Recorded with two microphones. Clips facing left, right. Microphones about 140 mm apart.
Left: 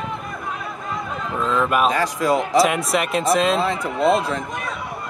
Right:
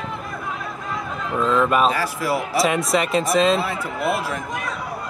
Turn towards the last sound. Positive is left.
turn(degrees=20)  # may be behind; listen again after turning